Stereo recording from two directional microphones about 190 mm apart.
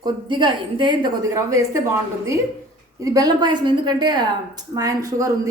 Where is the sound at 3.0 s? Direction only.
20° right (ahead or behind).